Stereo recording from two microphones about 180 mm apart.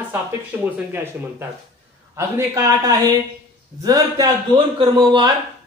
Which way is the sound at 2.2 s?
15° right (ahead or behind).